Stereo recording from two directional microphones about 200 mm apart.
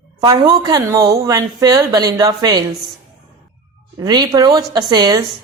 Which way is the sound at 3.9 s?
20° right (ahead or behind).